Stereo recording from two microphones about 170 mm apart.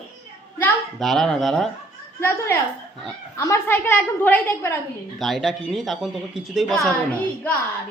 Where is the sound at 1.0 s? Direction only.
Centre (ahead or behind).